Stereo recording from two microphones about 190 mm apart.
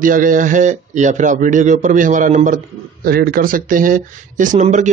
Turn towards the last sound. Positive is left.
turn(degrees=-40)  # may be behind; listen again after turning